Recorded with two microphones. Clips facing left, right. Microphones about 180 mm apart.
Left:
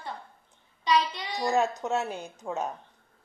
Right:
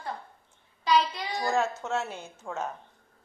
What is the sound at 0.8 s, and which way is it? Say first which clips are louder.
Child singing: right 1 dB; centre (ahead or behind).